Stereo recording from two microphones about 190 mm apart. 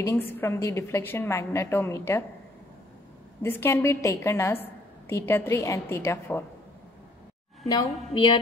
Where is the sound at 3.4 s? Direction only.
10° left (ahead or behind).